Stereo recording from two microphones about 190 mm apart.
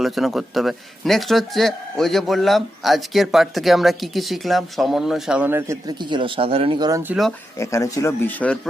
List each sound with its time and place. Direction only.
0.0 s speech: centre (ahead or behind)
6.0 s speech: 25° right (ahead or behind)
7.1 s speech: centre (ahead or behind)
7.6 s speech: 15° left (ahead or behind)